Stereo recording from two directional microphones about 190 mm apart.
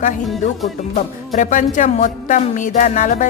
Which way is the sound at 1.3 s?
40° left (ahead or behind).